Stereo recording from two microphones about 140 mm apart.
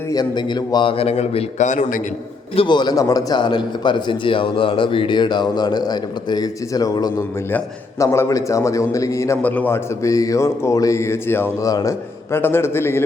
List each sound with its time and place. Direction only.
0.1 s a man's voice: 30° left (ahead or behind); by 1.6 s 45° left (ahead or behind)
2.6 s a man's voice: 35° left (ahead or behind); by 13.0 s 15° left (ahead or behind)